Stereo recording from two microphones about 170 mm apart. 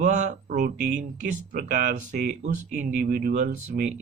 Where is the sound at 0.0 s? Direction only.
45° right (ahead or behind).